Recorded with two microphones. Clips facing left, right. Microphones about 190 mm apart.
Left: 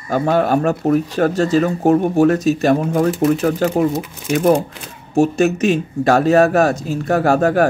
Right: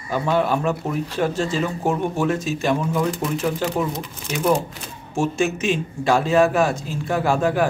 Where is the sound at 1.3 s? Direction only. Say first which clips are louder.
Left 7 dB; 40° left (ahead or behind).